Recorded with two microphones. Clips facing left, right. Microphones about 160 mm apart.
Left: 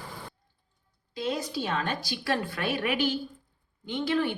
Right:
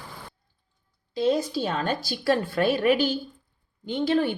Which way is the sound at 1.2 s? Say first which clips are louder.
Right 7 dB; 35° right (ahead or behind).